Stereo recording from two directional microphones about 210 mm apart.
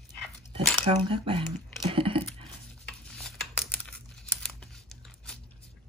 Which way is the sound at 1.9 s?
25° right (ahead or behind).